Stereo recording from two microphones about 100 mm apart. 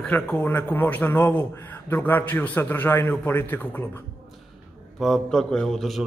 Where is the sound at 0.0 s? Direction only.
15° left (ahead or behind).